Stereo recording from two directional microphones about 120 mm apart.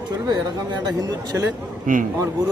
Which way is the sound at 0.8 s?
35° right (ahead or behind).